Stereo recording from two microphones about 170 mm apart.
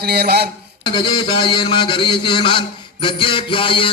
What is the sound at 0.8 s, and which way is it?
A man's voice, 30° left (ahead or behind).